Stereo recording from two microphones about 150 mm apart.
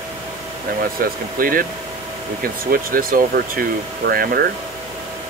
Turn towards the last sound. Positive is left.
turn(degrees=-85)